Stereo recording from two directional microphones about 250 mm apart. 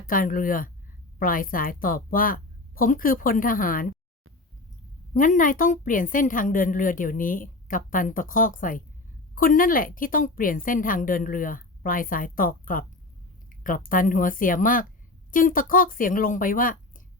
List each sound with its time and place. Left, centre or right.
0.1 s a woman's voice: left
5.1 s a woman's voice: left